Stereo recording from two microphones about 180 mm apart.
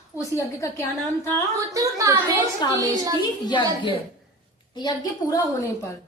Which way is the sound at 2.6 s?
20° left (ahead or behind).